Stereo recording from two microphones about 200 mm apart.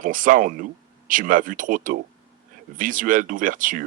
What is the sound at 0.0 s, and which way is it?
Speech, 40° right (ahead or behind).